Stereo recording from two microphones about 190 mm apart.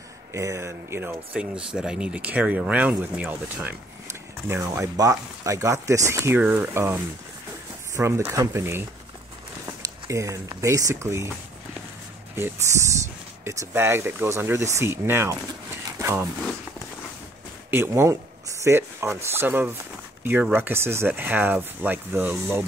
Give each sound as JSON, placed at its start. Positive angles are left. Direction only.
{"t": 0.3, "sound": "speech", "side_deg": -15}
{"t": 12.4, "sound": "speech", "side_deg": -15}
{"t": 17.6, "sound": "speech", "side_deg": -15}